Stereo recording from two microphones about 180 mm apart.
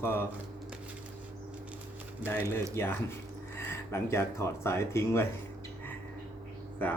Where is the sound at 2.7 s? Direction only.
15° left (ahead or behind).